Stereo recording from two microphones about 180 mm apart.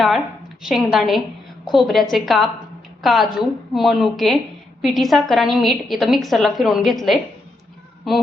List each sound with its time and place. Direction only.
0.6 s a woman's voice: centre (ahead or behind)